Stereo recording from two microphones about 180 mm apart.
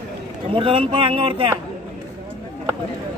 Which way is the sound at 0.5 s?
30° right (ahead or behind).